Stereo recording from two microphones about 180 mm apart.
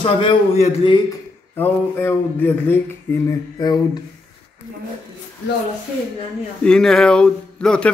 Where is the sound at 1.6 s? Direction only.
10° left (ahead or behind).